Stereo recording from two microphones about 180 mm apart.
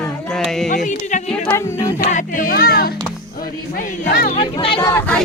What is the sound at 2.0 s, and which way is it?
Speech, 45° left (ahead or behind).